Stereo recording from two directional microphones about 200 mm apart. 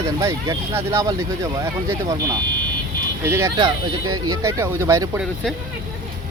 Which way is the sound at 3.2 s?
15° right (ahead or behind).